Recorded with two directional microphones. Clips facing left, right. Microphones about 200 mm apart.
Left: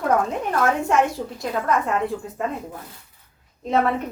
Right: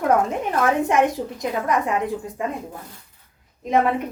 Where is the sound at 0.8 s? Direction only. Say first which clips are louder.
Right 1 dB; 20° right (ahead or behind).